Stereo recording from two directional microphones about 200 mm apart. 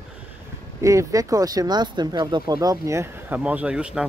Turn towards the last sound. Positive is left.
turn(degrees=-5)  # may be behind; listen again after turning